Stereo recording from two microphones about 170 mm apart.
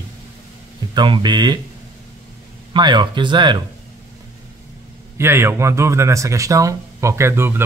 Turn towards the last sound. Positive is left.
turn(degrees=-15)  # may be behind; listen again after turning